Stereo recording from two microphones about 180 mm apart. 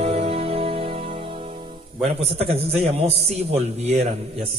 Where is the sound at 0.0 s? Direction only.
35° right (ahead or behind).